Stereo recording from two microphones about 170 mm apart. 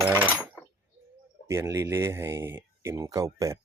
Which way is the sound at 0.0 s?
10° right (ahead or behind).